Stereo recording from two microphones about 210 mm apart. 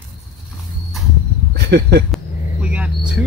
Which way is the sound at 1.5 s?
50° right (ahead or behind).